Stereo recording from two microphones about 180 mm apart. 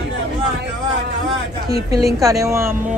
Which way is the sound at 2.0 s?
15° right (ahead or behind).